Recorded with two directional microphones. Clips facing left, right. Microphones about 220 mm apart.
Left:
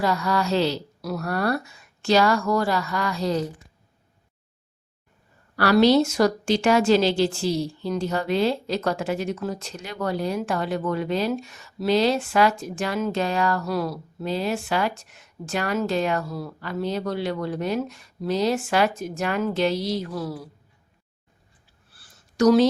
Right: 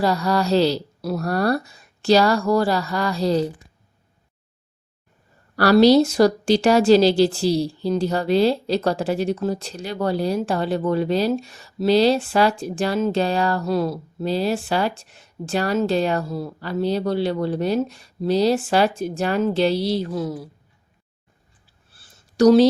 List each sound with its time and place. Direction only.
0.0 s speech: 35° right (ahead or behind)
5.5 s speech: 35° right (ahead or behind); by 20.4 s 20° right (ahead or behind)
21.9 s a sound: 25° right (ahead or behind)